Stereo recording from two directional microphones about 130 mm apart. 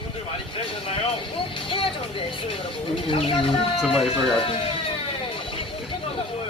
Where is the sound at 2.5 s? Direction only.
40° left (ahead or behind).